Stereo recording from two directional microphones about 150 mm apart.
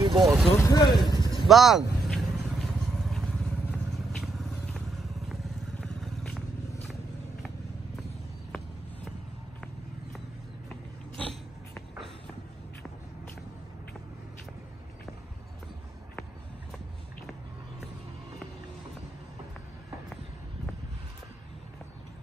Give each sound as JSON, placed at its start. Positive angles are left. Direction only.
{"t": 0.0, "sound": "vehicle", "side_deg": -25}
{"t": 0.5, "sound": "vehicle", "side_deg": 20}
{"t": 1.5, "sound": "vehicle", "side_deg": 0}